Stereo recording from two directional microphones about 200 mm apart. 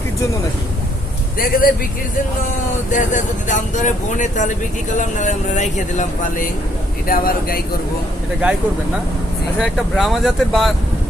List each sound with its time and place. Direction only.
1.4 s a man's voice: 45° left (ahead or behind)
2.9 s a man's voice: 40° left (ahead or behind)
9.6 s speech: centre (ahead or behind)